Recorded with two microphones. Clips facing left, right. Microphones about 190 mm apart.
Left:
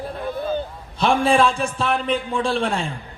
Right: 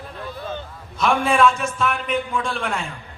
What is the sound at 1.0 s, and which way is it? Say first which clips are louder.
Speech: left 1 dB; 30° left (ahead or behind).